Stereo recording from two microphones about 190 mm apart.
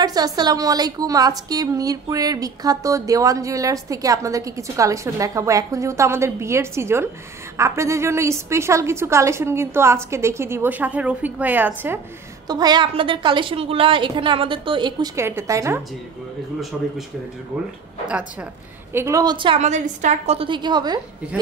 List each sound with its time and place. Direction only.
0.0 s a woman's voice: 20° right (ahead or behind)
12.4 s a woman's voice: 20° right (ahead or behind)
16.7 s speech: centre (ahead or behind)
18.9 s a woman's voice: 15° right (ahead or behind)